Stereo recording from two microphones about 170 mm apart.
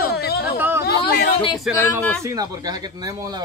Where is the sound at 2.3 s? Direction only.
20° right (ahead or behind).